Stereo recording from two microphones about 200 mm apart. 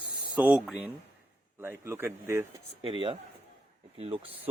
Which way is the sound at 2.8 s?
25° right (ahead or behind).